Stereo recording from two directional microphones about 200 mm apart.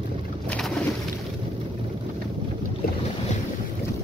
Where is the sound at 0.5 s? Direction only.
5° left (ahead or behind).